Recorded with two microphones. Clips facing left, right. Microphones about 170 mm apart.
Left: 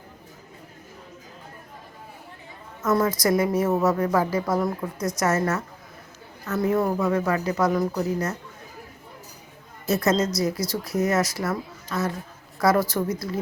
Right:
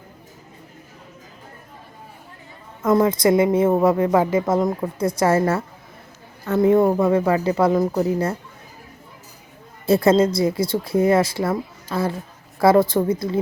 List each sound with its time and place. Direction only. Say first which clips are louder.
2.8 s speech: right 5 dB; 25° right (ahead or behind)
9.8 s a woman's voice: right 7 dB; 30° right (ahead or behind)